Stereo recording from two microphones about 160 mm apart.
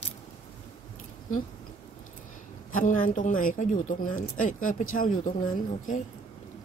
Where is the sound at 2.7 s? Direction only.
55° left (ahead or behind).